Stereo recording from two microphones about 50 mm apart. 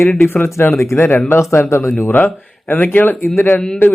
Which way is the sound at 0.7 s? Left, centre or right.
Left.